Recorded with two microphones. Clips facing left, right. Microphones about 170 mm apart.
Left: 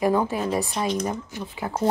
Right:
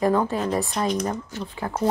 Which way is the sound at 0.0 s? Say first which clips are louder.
Right 1 dB; 10° left (ahead or behind).